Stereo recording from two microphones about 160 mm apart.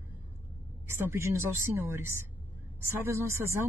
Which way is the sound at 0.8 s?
15° right (ahead or behind).